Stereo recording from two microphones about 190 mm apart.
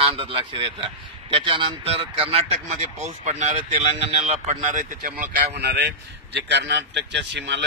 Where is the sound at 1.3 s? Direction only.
25° right (ahead or behind).